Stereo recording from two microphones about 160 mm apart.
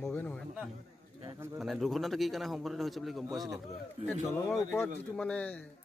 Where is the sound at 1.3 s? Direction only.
15° right (ahead or behind).